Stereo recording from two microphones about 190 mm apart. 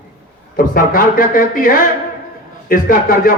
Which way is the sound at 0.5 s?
45° left (ahead or behind).